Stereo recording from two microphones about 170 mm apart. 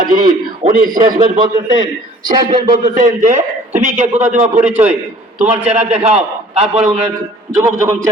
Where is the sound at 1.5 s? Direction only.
20° right (ahead or behind).